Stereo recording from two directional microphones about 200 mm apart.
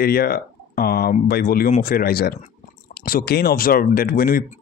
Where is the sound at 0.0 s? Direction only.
50° left (ahead or behind).